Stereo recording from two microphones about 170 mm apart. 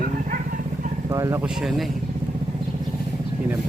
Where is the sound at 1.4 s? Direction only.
5° right (ahead or behind).